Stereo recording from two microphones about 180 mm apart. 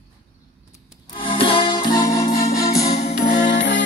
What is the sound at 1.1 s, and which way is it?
Music, 25° left (ahead or behind).